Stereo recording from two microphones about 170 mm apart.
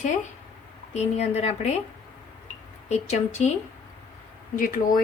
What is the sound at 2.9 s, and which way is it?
Speech, 40° left (ahead or behind).